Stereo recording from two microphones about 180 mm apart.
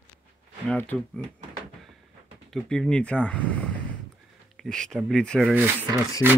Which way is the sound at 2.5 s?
5° left (ahead or behind).